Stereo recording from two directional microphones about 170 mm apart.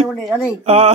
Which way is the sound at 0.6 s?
40° right (ahead or behind).